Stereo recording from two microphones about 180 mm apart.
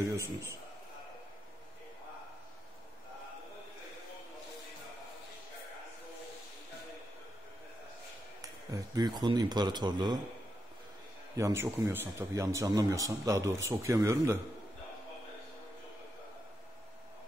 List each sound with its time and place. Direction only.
8.4 s speech: 20° right (ahead or behind)
11.3 s speech: 15° right (ahead or behind)